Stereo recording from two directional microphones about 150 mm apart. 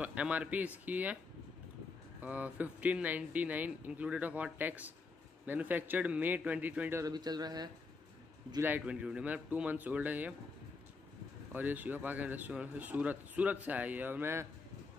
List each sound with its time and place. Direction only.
0.0 s a man's voice: 10° right (ahead or behind)
2.2 s a man's voice: 10° right (ahead or behind)
7.1 s speech: 25° right (ahead or behind)
8.6 s a man's voice: 10° right (ahead or behind)
11.5 s a man's voice: 10° right (ahead or behind)